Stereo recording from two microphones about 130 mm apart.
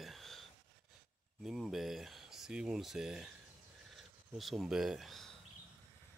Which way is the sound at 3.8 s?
Centre (ahead or behind).